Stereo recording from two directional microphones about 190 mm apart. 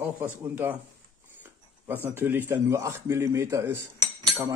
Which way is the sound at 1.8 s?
10° right (ahead or behind).